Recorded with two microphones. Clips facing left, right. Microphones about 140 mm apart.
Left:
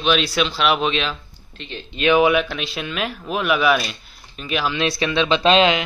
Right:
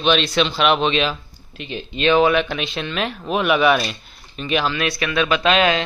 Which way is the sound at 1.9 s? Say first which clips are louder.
Even; 10° left (ahead or behind).